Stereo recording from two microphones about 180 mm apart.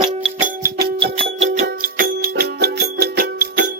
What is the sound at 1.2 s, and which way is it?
Music, 40° right (ahead or behind).